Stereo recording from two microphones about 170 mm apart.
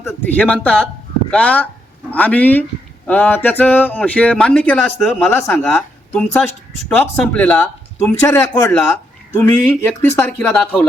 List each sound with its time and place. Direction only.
0.0 s speech: 10° left (ahead or behind)